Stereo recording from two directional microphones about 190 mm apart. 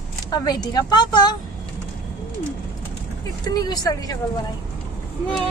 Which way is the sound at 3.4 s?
20° left (ahead or behind).